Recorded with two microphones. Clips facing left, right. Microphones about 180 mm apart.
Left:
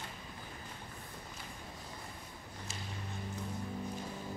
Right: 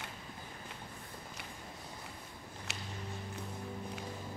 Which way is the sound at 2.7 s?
70° right (ahead or behind).